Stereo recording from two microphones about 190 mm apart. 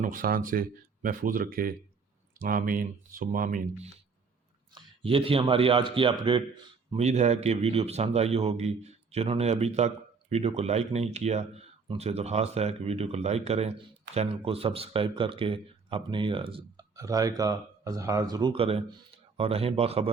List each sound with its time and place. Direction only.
0.0 s speech: 45° right (ahead or behind)
4.7 s speech: 30° right (ahead or behind)